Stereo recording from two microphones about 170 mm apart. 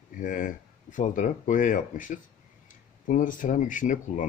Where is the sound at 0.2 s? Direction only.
50° left (ahead or behind).